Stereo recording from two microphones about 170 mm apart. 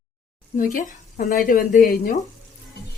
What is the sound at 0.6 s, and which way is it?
A woman's voice, 50° left (ahead or behind).